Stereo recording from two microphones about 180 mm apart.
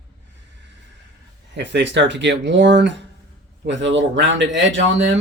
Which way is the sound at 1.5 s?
80° right.